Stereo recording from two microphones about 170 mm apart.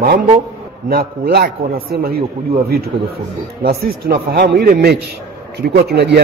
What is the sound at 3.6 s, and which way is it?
A man's voice, 65° right (ahead or behind).